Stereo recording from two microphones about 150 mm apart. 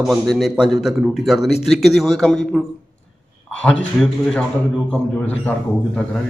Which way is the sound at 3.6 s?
10° left (ahead or behind).